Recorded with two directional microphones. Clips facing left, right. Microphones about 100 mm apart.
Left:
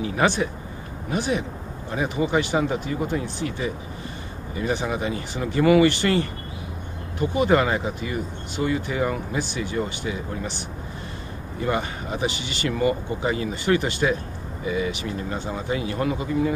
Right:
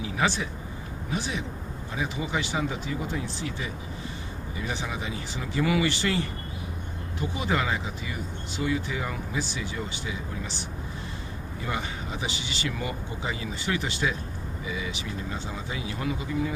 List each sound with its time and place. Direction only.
0.0 s speech: 55° left (ahead or behind)
11.6 s speech: 50° left (ahead or behind)